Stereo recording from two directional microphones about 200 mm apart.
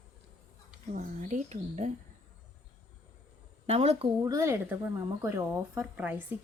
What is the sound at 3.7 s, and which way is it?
Speech, 30° right (ahead or behind).